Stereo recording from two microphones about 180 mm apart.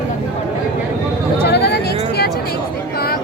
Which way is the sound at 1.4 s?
65° left (ahead or behind).